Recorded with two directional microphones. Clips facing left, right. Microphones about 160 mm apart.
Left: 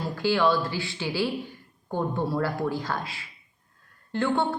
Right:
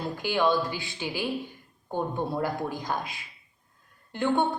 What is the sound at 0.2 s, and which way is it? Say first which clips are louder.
A woman's voice: left 2 dB; 20° right (ahead or behind).